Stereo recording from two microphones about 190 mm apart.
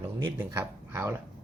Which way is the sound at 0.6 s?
15° right (ahead or behind).